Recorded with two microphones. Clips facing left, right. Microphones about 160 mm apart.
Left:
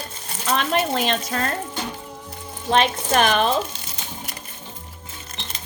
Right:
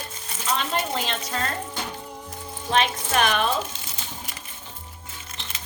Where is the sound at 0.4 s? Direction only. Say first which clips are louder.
Left 5 dB; 65° left (ahead or behind).